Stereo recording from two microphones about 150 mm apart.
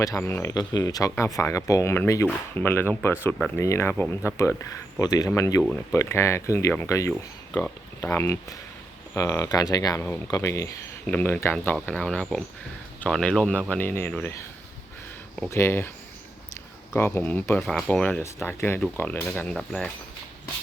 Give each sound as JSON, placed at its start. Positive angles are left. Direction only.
{"t": 0.0, "sound": "speech", "side_deg": 20}
{"t": 0.5, "sound": "speech", "side_deg": 25}
{"t": 7.1, "sound": "speech", "side_deg": 10}
{"t": 15.4, "sound": "speech", "side_deg": 15}
{"t": 16.9, "sound": "speech", "side_deg": 15}